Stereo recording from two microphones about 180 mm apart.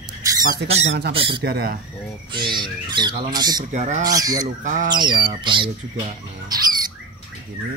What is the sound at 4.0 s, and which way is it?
Speech, 20° right (ahead or behind).